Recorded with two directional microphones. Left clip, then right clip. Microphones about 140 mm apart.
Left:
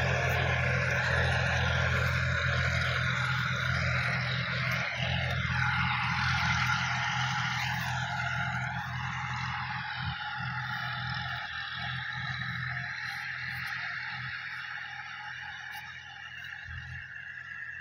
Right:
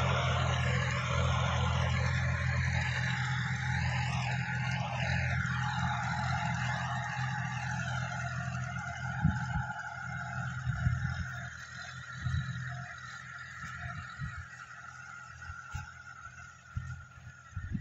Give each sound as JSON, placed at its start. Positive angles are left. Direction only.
{"t": 0.0, "sound": "vehicle", "side_deg": -45}
{"t": 5.5, "sound": "vehicle", "side_deg": -10}
{"t": 6.1, "sound": "vehicle", "side_deg": -30}
{"t": 6.8, "sound": "vehicle", "side_deg": -10}